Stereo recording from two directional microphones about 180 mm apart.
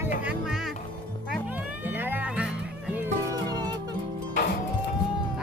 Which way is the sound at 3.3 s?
20° right (ahead or behind).